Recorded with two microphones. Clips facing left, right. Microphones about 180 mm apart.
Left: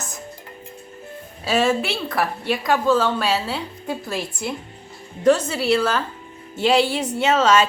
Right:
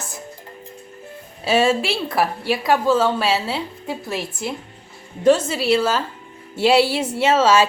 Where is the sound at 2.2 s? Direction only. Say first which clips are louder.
Right 2 dB; 5° right (ahead or behind).